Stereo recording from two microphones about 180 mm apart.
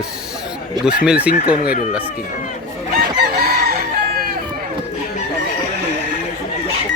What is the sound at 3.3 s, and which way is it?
Chicken, 60° right (ahead or behind).